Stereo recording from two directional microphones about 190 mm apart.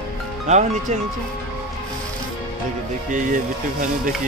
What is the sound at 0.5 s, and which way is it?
Speech, 40° right (ahead or behind).